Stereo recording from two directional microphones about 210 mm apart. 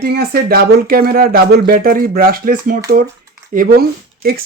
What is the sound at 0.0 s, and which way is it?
Speech, 45° right (ahead or behind).